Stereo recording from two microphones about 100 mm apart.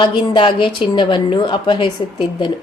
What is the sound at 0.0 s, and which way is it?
A woman's voice, 60° left (ahead or behind).